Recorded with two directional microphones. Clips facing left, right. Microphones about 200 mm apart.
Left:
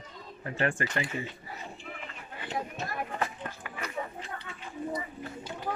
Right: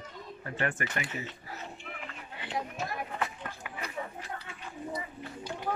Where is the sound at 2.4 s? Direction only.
40° left (ahead or behind).